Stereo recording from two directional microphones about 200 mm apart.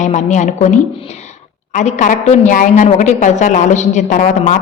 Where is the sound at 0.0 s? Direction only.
35° left (ahead or behind).